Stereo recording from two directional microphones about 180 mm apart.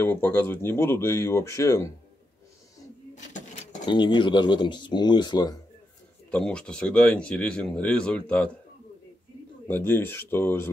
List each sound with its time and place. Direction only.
0.0 s speech: 10° left (ahead or behind)
3.2 s a sound: 40° left (ahead or behind)
3.8 s speech: 25° left (ahead or behind)
6.3 s speech: 5° left (ahead or behind)
9.7 s speech: 10° left (ahead or behind)